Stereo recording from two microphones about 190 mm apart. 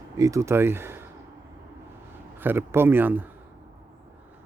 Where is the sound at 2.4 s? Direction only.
10° right (ahead or behind).